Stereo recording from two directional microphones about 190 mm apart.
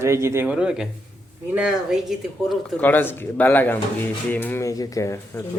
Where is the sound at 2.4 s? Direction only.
10° left (ahead or behind).